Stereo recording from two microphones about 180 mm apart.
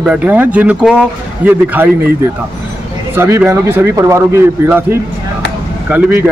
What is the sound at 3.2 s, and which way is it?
Speech, 15° right (ahead or behind).